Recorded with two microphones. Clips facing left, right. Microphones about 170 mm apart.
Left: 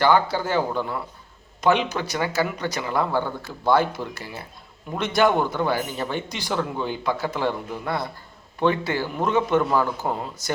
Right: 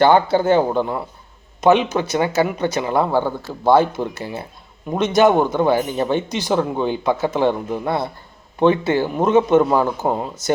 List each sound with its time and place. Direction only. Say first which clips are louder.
0.0 s speech: right 6 dB; 25° right (ahead or behind)